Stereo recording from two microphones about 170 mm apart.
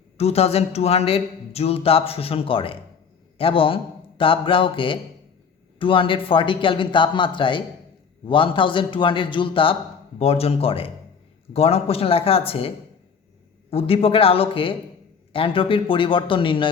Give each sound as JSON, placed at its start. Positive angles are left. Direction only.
{"t": 0.2, "sound": "speech", "side_deg": 35}